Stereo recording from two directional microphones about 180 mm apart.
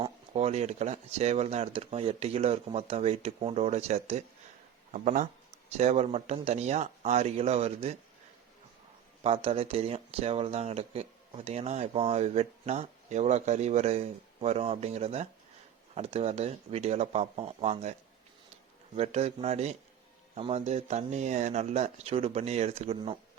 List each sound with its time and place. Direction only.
0.0 s speech: 35° right (ahead or behind)
9.2 s speech: 30° right (ahead or behind)
18.9 s speech: 35° right (ahead or behind)